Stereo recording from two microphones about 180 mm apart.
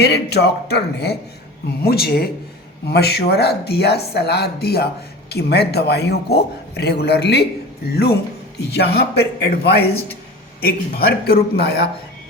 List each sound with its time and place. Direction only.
0.0 s a man's voice: 65° left (ahead or behind)